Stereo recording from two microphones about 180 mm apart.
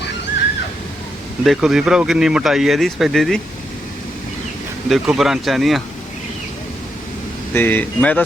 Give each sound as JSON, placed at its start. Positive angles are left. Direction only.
{"t": 1.5, "sound": "speech", "side_deg": 0}
{"t": 4.9, "sound": "speech", "side_deg": 0}
{"t": 7.5, "sound": "speech", "side_deg": 10}